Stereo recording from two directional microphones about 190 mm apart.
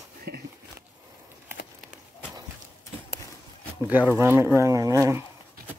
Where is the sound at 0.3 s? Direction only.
55° right (ahead or behind).